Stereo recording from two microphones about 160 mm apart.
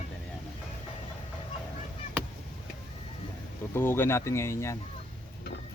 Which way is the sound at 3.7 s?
15° left (ahead or behind).